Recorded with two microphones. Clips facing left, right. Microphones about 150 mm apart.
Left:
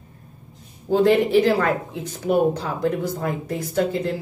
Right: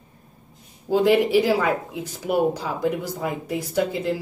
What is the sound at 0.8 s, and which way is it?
Speech, 10° right (ahead or behind).